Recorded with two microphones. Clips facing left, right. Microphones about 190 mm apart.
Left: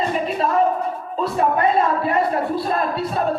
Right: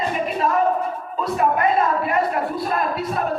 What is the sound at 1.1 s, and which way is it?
A man's voice, 30° left (ahead or behind).